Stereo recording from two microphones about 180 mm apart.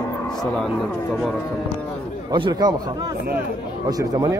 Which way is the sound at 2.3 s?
25° right (ahead or behind).